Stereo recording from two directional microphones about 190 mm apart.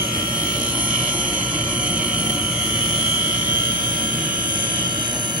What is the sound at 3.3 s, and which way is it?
Vehicle, 45° right (ahead or behind).